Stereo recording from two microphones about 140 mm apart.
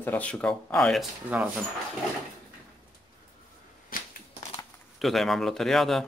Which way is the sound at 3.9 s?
90° left.